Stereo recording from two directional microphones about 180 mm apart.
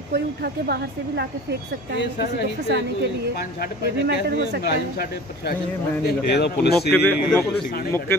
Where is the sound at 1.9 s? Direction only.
70° left (ahead or behind).